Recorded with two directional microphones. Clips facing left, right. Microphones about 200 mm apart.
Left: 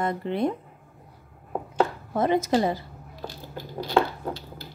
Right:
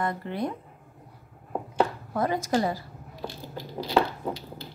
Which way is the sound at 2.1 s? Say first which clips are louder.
Left 4 dB; 25° left (ahead or behind).